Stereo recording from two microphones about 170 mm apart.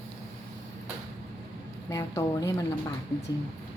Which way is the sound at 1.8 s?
20° left (ahead or behind).